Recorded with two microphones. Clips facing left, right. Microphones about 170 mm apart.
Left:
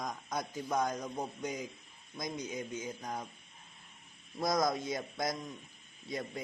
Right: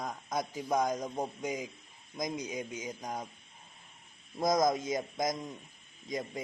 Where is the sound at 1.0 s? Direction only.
30° right (ahead or behind).